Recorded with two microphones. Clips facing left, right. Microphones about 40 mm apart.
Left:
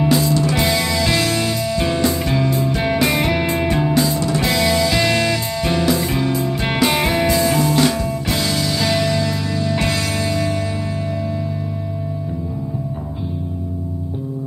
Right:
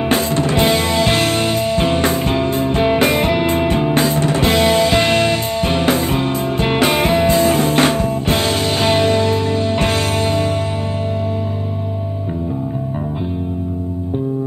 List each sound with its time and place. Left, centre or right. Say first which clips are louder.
0.0 s music: even; right